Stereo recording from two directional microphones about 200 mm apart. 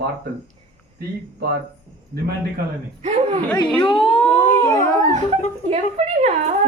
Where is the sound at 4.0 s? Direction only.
30° left (ahead or behind).